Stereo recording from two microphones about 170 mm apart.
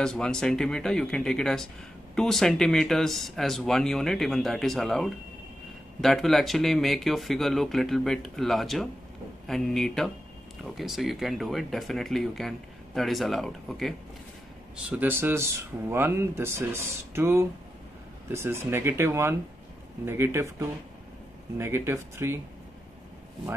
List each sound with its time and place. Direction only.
0.0 s speech: 5° left (ahead or behind)
14.9 s speech: 10° right (ahead or behind)